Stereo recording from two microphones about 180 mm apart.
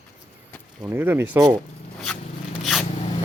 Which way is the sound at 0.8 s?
10° right (ahead or behind).